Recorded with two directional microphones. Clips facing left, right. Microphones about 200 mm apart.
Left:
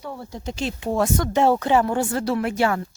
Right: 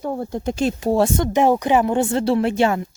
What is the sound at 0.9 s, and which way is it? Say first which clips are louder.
Speech: right 2 dB; 30° right (ahead or behind).